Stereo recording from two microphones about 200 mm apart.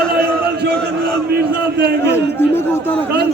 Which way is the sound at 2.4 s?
10° left (ahead or behind).